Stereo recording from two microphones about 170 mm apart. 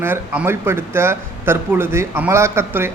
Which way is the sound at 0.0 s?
15° right (ahead or behind).